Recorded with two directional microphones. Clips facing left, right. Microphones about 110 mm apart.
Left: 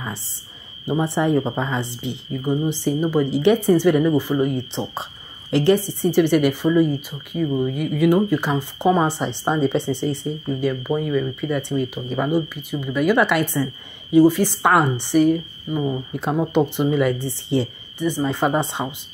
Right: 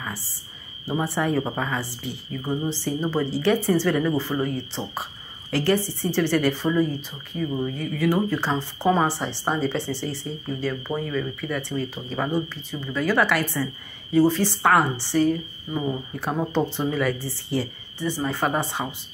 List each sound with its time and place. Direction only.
0.0 s a woman's voice: 25° left (ahead or behind)